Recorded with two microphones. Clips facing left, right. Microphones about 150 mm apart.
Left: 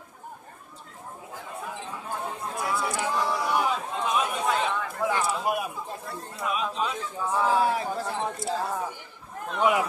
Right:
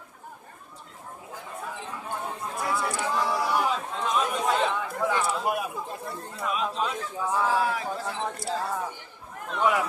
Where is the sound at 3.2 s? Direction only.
5° right (ahead or behind).